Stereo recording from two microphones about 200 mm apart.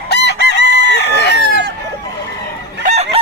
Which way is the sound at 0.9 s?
55° left (ahead or behind).